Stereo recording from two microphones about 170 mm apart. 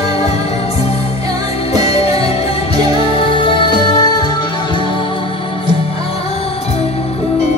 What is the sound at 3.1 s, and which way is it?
Music, 30° left (ahead or behind).